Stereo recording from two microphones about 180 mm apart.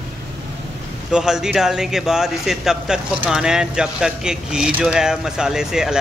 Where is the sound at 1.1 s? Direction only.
5° right (ahead or behind).